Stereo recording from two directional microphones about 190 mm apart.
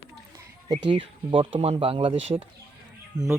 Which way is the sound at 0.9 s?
25° right (ahead or behind).